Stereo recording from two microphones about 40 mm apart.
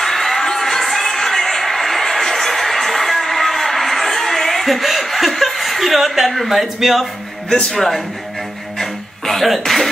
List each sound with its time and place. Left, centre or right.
0.0 s a sound: centre
7.7 s speech: centre
8.7 s music: centre